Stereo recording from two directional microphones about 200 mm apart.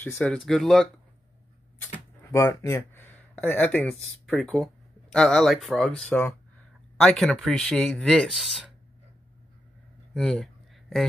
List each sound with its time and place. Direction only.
0.0 s speech: 5° left (ahead or behind)
2.3 s speech: 15° left (ahead or behind)
10.1 s a sound: 5° left (ahead or behind)